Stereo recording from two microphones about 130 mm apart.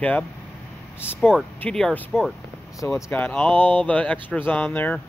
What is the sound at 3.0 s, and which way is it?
Speech, 15° left (ahead or behind).